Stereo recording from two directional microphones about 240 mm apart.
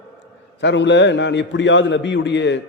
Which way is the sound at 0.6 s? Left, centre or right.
Left.